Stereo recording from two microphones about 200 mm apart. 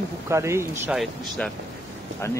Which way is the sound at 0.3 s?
15° right (ahead or behind).